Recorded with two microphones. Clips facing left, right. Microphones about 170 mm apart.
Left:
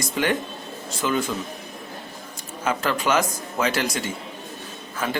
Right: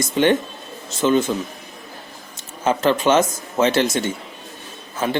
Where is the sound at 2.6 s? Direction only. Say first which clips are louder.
Right 6 dB; 25° right (ahead or behind).